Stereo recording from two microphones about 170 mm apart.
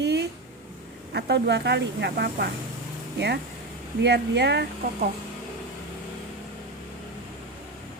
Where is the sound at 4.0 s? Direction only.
80° right.